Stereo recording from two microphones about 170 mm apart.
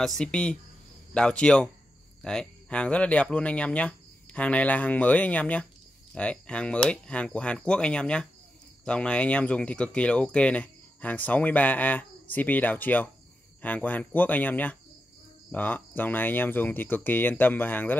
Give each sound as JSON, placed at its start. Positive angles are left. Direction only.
{"t": 0.0, "sound": "speech", "side_deg": 5}